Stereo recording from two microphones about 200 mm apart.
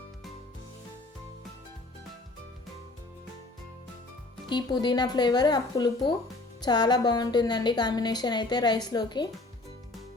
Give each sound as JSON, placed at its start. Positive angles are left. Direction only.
{"t": 4.4, "sound": "a woman's voice", "side_deg": 20}